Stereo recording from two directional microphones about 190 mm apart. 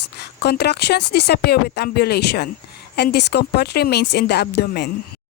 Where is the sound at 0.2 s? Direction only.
60° left (ahead or behind).